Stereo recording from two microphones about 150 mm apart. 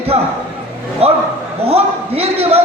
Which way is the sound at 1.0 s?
40° right (ahead or behind).